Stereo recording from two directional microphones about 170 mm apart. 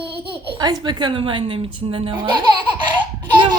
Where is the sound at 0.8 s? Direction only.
25° right (ahead or behind).